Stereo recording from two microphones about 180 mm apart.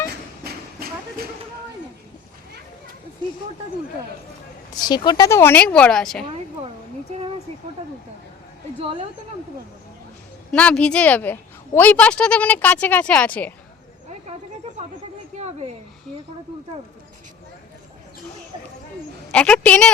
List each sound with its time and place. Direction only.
0.4 s a sound: 60° right (ahead or behind)
4.7 s a woman's voice: 25° left (ahead or behind); by 6.2 s 5° left (ahead or behind)
8.8 s speech: 30° right (ahead or behind)
10.5 s a woman's voice: 5° left (ahead or behind)
15.4 s a woman's voice: 35° right (ahead or behind)
19.3 s a woman's voice: 5° left (ahead or behind)